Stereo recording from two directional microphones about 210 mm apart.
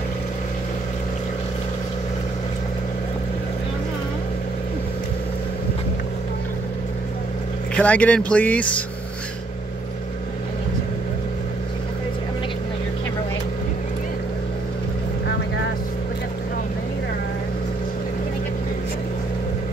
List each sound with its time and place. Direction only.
7.7 s speech: 5° left (ahead or behind)